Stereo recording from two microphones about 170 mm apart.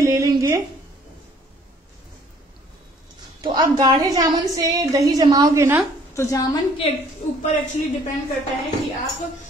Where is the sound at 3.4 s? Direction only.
25° right (ahead or behind).